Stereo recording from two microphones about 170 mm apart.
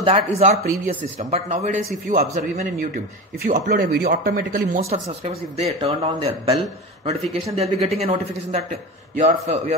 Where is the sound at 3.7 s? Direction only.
80° right.